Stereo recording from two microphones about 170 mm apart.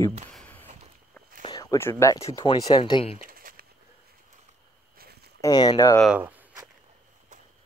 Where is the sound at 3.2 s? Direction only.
55° right (ahead or behind).